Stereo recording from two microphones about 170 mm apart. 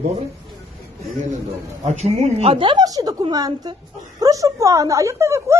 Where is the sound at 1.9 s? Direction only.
40° right (ahead or behind).